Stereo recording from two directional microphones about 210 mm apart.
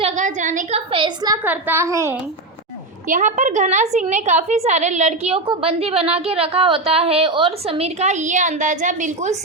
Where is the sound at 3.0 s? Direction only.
40° right (ahead or behind).